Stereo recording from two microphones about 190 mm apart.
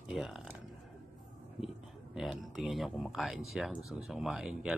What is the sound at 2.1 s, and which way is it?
Speech, centre (ahead or behind).